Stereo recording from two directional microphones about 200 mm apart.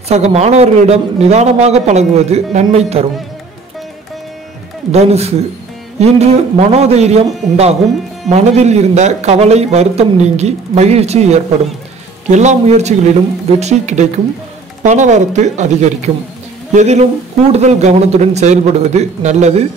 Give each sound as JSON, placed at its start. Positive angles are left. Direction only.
{"t": 0.1, "sound": "a man's voice", "side_deg": -35}
{"t": 4.9, "sound": "a man's voice", "side_deg": -30}